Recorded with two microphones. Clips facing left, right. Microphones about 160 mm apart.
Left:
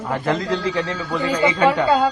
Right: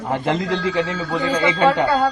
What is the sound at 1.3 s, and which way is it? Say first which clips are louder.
Speech: even; 15° left (ahead or behind).